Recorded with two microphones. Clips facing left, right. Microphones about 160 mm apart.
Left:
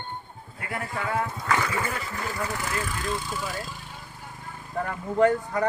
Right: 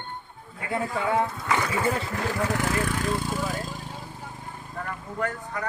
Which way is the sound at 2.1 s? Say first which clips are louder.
Right 4 dB; 65° right (ahead or behind).